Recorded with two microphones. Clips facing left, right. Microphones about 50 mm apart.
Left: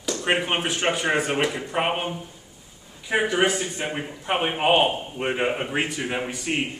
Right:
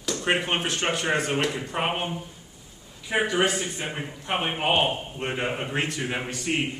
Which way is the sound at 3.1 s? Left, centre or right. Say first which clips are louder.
Left 2 dB; centre.